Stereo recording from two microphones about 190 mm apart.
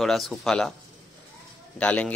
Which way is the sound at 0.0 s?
Centre (ahead or behind).